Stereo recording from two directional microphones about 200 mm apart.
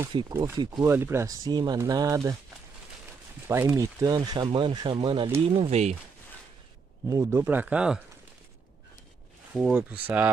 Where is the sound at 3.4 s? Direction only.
10° right (ahead or behind); by 5.9 s 35° right (ahead or behind).